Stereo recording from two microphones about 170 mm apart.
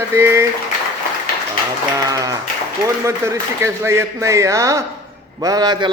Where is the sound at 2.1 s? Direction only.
20° right (ahead or behind).